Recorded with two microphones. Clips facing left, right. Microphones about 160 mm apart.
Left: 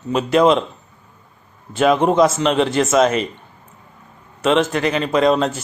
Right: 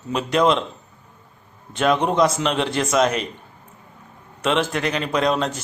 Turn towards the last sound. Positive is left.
turn(degrees=0)  # may be behind; listen again after turning